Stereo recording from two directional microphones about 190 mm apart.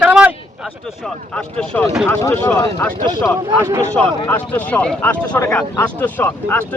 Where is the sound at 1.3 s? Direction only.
5° left (ahead or behind).